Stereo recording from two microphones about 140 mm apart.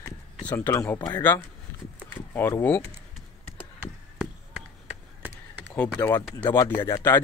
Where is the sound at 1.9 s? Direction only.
15° left (ahead or behind).